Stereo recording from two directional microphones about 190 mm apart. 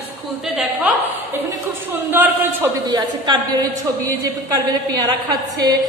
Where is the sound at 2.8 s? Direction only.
20° right (ahead or behind).